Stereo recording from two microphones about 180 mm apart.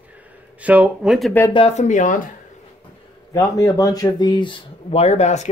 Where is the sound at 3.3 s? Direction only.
20° left (ahead or behind).